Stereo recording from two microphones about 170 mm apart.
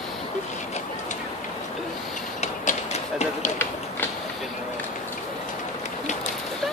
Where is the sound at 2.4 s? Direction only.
45° left (ahead or behind).